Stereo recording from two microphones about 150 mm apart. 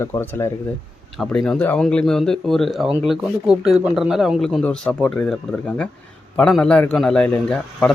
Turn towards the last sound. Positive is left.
turn(degrees=5)  # may be behind; listen again after turning